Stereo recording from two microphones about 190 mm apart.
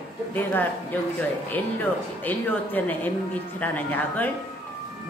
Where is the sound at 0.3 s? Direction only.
10° left (ahead or behind).